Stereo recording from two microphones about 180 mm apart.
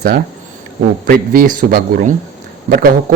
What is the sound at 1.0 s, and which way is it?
Speech, 50° right (ahead or behind).